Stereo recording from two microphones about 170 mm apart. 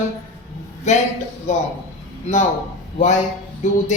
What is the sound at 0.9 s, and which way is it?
Speech, 45° left (ahead or behind).